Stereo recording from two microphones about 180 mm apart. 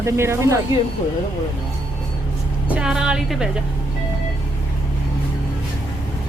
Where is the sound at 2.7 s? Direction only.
5° right (ahead or behind).